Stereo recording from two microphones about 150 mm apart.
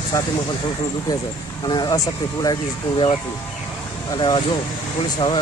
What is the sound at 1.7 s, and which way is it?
Speech, 30° left (ahead or behind).